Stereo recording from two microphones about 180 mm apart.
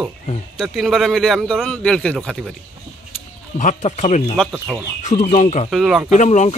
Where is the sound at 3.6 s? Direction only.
40° left (ahead or behind).